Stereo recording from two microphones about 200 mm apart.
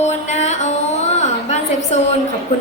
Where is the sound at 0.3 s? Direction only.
35° left (ahead or behind).